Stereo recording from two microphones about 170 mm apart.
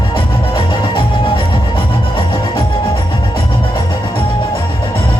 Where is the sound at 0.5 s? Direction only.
30° left (ahead or behind).